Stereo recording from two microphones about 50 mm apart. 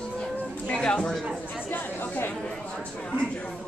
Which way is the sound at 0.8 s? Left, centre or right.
Centre.